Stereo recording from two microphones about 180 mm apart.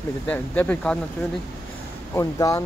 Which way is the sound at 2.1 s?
15° left (ahead or behind).